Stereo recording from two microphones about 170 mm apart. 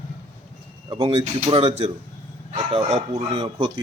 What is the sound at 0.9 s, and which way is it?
Speech, 25° right (ahead or behind).